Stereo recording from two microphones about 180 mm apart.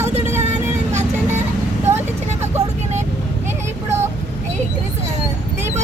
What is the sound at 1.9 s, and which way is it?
Vehicle, 40° right (ahead or behind).